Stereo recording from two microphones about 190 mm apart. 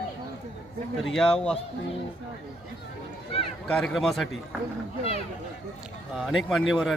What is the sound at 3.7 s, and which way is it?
Speech, centre (ahead or behind).